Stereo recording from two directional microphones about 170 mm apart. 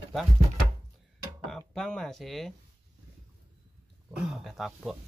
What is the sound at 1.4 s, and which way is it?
Speech, 5° left (ahead or behind).